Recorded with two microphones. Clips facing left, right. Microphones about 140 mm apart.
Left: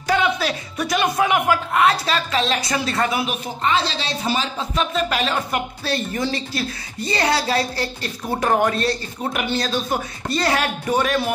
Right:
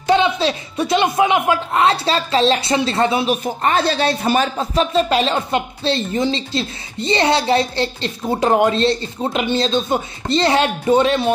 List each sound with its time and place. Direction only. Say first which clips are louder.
0.0 s speech: right 5 dB; 25° right (ahead or behind)
3.6 s speech: right 5 dB; 50° right (ahead or behind)
4.7 s speech: right 6 dB; 30° right (ahead or behind)